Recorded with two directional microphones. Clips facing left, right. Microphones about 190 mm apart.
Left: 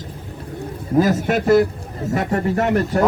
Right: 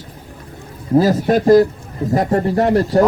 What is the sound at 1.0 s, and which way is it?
Speech, 35° right (ahead or behind).